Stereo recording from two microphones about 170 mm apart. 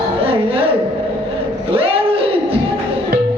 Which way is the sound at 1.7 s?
35° right (ahead or behind).